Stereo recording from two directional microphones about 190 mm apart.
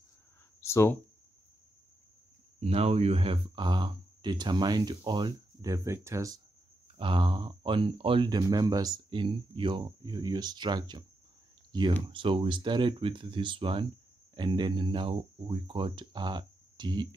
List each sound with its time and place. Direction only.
0.6 s speech: 15° left (ahead or behind)
2.6 s speech: 35° right (ahead or behind)